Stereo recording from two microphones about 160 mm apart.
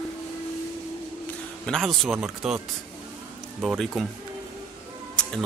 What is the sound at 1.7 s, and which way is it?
Speech, centre (ahead or behind).